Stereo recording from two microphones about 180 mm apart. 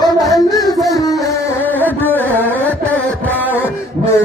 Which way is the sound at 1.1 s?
Centre (ahead or behind).